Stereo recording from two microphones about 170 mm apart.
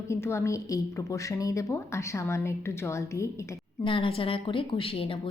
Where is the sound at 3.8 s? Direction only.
30° left (ahead or behind).